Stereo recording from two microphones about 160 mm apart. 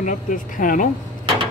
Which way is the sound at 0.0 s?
55° left (ahead or behind).